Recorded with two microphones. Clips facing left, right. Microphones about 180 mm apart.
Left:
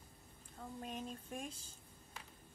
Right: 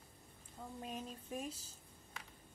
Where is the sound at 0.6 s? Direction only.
5° right (ahead or behind).